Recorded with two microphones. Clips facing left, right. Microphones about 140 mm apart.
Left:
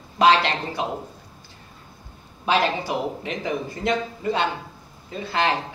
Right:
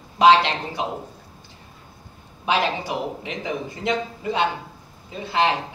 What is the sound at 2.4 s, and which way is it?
Speech, 20° right (ahead or behind).